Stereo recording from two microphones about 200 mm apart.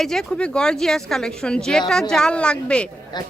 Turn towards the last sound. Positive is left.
turn(degrees=20)  # may be behind; listen again after turning